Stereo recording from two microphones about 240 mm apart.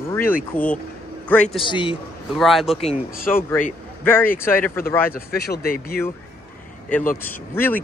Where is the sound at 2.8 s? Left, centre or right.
Left.